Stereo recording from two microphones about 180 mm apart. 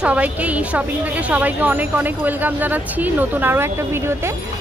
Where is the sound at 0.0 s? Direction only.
5° right (ahead or behind).